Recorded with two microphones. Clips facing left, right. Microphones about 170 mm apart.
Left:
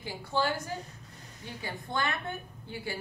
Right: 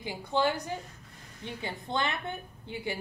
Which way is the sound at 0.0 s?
20° right (ahead or behind).